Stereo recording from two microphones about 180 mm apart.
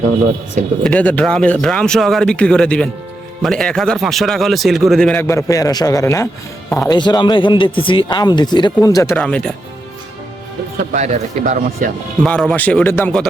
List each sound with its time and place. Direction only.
0.9 s a man's voice: 5° left (ahead or behind)
9.1 s a man's voice: 5° left (ahead or behind)
10.9 s speech: 40° right (ahead or behind)
12.2 s speech: 5° left (ahead or behind)